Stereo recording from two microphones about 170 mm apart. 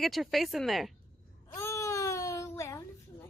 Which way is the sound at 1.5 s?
15° left (ahead or behind).